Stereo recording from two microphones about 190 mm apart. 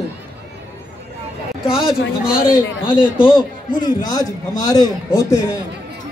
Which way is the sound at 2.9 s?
25° left (ahead or behind).